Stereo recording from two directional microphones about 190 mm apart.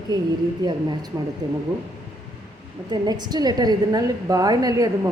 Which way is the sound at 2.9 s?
20° right (ahead or behind).